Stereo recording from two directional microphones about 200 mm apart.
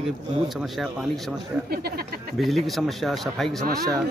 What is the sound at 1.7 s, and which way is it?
Speech, 50° right (ahead or behind).